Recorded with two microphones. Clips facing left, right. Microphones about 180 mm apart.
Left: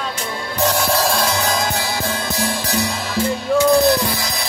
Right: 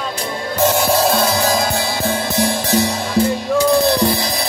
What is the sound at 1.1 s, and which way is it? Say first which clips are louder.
Music: right 3 dB; 30° right (ahead or behind).